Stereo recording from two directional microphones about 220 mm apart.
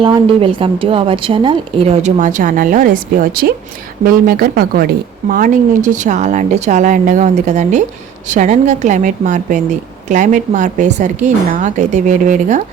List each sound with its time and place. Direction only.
0.0 s a woman's voice: 20° right (ahead or behind)